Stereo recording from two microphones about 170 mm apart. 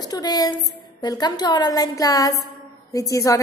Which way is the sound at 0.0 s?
20° left (ahead or behind).